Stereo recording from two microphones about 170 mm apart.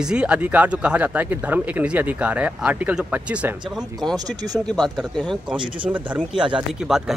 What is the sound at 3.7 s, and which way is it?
Speech, centre (ahead or behind).